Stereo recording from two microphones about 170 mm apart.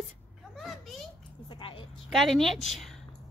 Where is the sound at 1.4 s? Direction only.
30° left (ahead or behind).